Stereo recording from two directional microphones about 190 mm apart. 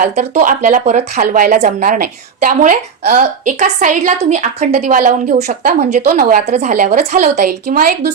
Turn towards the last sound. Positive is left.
turn(degrees=-50)  # may be behind; listen again after turning